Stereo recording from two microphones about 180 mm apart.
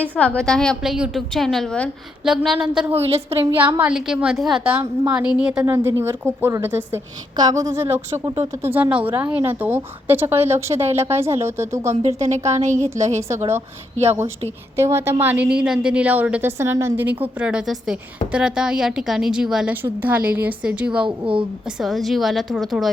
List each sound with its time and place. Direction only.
0.2 s a woman's voice: 5° left (ahead or behind)
2.9 s a woman's voice: 35° right (ahead or behind)
3.5 s a woman's voice: 10° right (ahead or behind)
5.6 s a woman's voice: 15° right (ahead or behind)
12.5 s a woman's voice: 40° right (ahead or behind)
13.1 s a woman's voice: 15° right (ahead or behind)
14.8 s a woman's voice: 15° right (ahead or behind)